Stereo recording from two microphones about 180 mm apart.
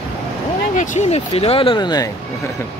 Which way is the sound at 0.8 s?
40° left (ahead or behind).